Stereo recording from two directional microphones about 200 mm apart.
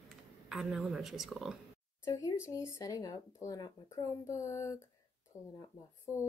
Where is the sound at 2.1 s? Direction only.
15° left (ahead or behind).